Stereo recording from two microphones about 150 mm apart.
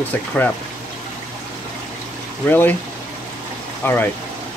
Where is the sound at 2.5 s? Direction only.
10° left (ahead or behind).